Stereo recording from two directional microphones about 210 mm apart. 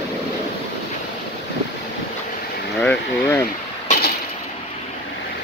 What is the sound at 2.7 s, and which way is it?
Speech, 5° left (ahead or behind).